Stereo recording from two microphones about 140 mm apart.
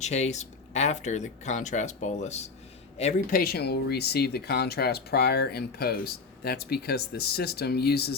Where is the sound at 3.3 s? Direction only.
90° left.